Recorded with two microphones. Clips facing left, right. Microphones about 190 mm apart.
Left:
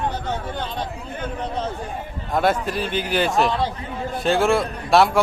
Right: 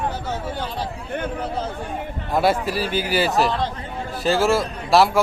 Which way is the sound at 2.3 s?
5° right (ahead or behind).